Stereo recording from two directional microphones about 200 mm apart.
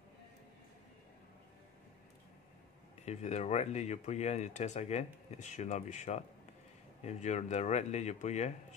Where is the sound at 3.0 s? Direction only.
35° left (ahead or behind).